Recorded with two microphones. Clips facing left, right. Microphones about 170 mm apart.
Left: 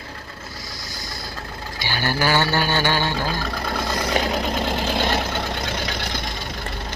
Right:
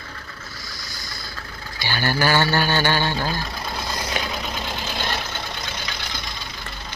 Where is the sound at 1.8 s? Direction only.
15° left (ahead or behind).